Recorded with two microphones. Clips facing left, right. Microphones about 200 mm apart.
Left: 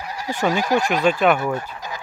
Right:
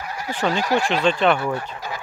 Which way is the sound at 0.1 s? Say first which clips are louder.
Left 2 dB; 10° left (ahead or behind).